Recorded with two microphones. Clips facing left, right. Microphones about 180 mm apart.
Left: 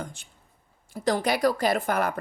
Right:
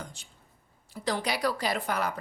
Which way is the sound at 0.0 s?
55° left (ahead or behind).